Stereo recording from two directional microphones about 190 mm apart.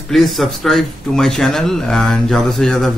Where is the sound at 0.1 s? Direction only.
Centre (ahead or behind).